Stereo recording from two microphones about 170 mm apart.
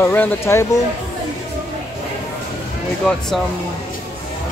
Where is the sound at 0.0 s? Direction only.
10° left (ahead or behind).